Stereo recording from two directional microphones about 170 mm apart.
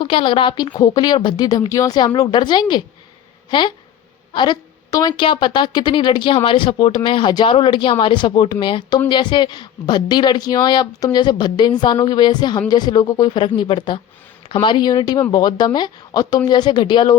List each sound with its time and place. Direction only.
0.0 s a woman's voice: 30° left (ahead or behind)